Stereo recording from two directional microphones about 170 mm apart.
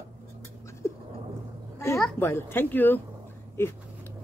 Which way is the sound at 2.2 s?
15° left (ahead or behind).